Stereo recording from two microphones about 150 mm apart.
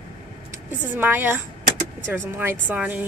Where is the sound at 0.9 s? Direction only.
15° right (ahead or behind).